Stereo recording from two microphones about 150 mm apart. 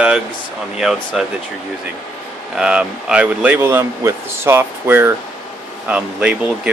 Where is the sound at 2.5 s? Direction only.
5° right (ahead or behind).